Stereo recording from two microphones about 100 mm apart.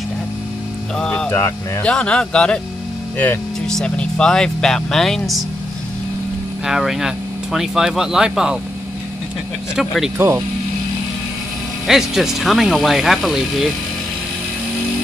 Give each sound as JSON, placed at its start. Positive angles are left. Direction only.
{"t": 0.9, "sound": "music", "side_deg": 10}
{"t": 1.8, "sound": "speech", "side_deg": 10}
{"t": 3.6, "sound": "speech", "side_deg": 5}
{"t": 6.6, "sound": "speech", "side_deg": -5}
{"t": 9.8, "sound": "speech", "side_deg": -5}
{"t": 10.1, "sound": "speech", "side_deg": -25}
{"t": 11.9, "sound": "speech", "side_deg": -5}